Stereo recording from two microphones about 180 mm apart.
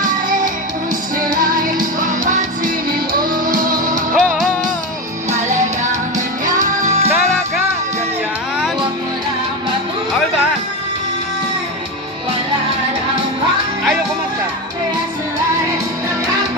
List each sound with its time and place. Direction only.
0.0 s music: 50° right (ahead or behind)
3.1 s music: 50° right (ahead or behind)
4.1 s music: centre (ahead or behind)
6.4 s music: 40° right (ahead or behind)